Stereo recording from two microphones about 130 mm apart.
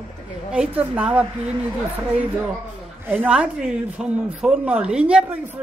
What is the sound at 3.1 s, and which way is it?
Speech, 10° right (ahead or behind).